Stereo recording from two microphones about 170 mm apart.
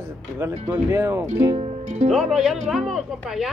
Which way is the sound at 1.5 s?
40° right (ahead or behind).